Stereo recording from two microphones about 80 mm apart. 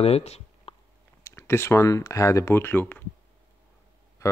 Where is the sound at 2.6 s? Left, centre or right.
Left.